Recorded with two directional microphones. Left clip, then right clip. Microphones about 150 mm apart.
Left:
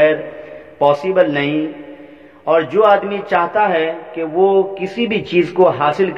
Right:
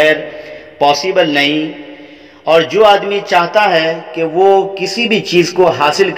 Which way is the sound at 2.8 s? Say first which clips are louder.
Right 4 dB; 25° right (ahead or behind).